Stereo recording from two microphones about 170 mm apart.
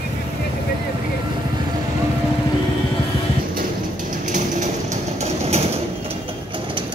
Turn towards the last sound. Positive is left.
turn(degrees=-40)  # may be behind; listen again after turning